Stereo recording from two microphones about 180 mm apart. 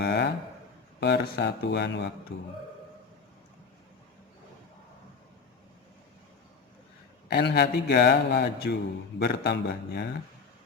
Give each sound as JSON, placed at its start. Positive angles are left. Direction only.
{"t": 0.0, "sound": "a sound", "side_deg": 65}
{"t": 0.9, "sound": "speech", "side_deg": 70}
{"t": 7.3, "sound": "a man's voice", "side_deg": 65}